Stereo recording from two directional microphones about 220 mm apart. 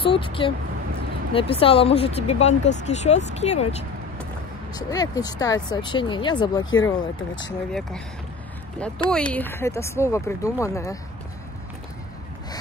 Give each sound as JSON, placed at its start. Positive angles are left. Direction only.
{"t": 0.0, "sound": "speech", "side_deg": 25}
{"t": 4.7, "sound": "speech", "side_deg": 15}
{"t": 8.7, "sound": "speech", "side_deg": 5}